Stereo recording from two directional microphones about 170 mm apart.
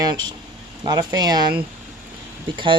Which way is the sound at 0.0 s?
25° right (ahead or behind).